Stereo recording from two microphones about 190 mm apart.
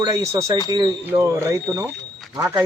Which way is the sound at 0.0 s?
15° right (ahead or behind).